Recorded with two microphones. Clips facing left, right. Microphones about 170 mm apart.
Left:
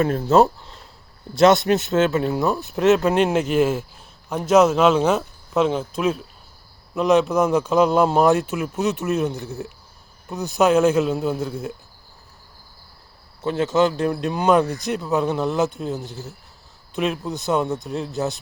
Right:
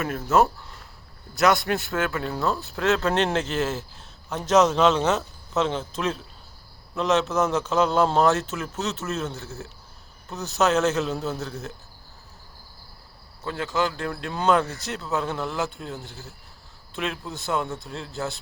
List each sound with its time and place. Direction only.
0.0 s a man's voice: 30° left (ahead or behind); by 11.7 s 10° left (ahead or behind)
13.4 s speech: 20° left (ahead or behind)